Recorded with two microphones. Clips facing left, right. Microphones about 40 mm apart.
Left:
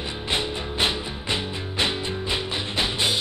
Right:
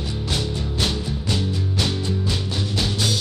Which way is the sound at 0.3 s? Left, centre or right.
Left.